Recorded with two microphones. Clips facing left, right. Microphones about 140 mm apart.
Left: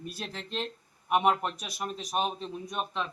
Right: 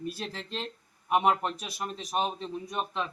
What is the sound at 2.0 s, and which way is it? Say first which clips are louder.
A man's voice: right 1 dB; 5° left (ahead or behind).